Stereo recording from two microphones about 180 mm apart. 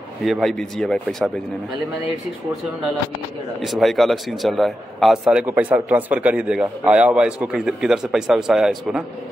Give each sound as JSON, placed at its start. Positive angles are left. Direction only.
{"t": 0.2, "sound": "speech", "side_deg": 0}
{"t": 3.6, "sound": "speech", "side_deg": 0}